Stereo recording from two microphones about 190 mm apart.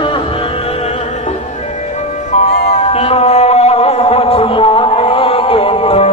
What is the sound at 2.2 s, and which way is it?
Music, 40° left (ahead or behind).